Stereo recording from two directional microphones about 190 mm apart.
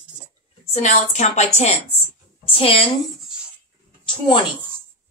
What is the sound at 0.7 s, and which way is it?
A woman's voice, 35° left (ahead or behind).